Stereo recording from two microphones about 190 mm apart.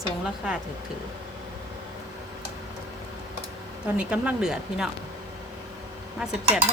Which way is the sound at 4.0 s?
5° right (ahead or behind).